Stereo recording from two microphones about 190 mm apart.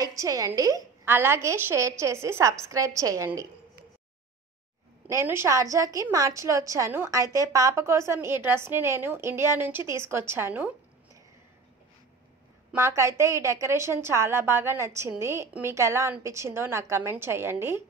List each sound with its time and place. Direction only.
0.0 s a woman's voice: 20° right (ahead or behind)
5.0 s a woman's voice: 15° right (ahead or behind)
12.7 s a woman's voice: 15° right (ahead or behind)